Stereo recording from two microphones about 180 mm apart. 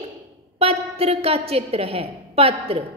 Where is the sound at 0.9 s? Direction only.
35° right (ahead or behind).